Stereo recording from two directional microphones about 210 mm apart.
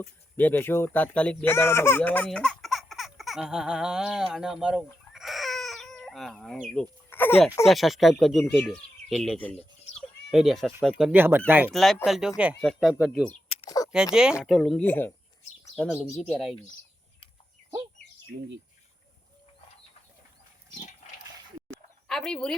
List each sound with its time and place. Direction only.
0.3 s speech: 10° left (ahead or behind)
9.9 s goat: centre (ahead or behind)
11.0 s speech: 10° right (ahead or behind)
11.7 s speech: centre (ahead or behind)
13.5 s a sound: 20° left (ahead or behind)
13.9 s speech: 5° right (ahead or behind)
22.0 s speech: centre (ahead or behind)